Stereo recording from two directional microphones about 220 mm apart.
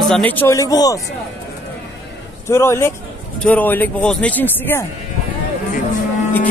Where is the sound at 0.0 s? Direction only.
5° left (ahead or behind).